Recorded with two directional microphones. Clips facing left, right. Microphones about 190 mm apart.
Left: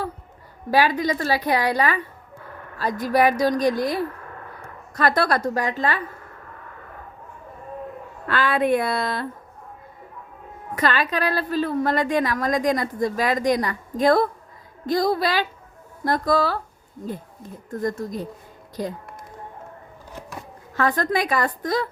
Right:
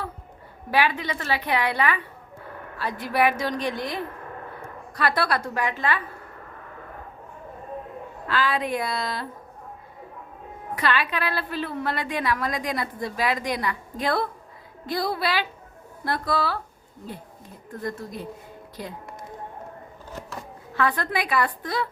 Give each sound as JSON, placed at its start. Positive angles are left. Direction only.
{"t": 0.7, "sound": "a woman's voice", "side_deg": 40}
{"t": 8.3, "sound": "speech", "side_deg": 55}
{"t": 10.8, "sound": "a woman's voice", "side_deg": 45}
{"t": 17.7, "sound": "a woman's voice", "side_deg": 45}
{"t": 20.7, "sound": "a woman's voice", "side_deg": 45}